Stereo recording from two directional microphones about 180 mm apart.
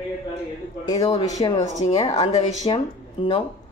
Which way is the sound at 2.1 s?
25° left (ahead or behind).